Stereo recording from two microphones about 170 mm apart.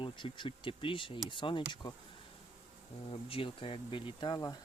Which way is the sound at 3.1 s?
30° left (ahead or behind).